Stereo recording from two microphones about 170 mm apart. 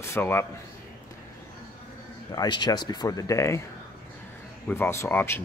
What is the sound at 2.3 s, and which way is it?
Speech, 25° left (ahead or behind).